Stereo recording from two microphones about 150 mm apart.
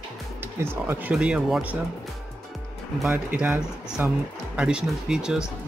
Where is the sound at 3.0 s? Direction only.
5° right (ahead or behind).